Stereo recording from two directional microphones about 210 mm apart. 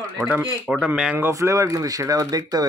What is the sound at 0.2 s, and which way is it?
Speech, 5° right (ahead or behind).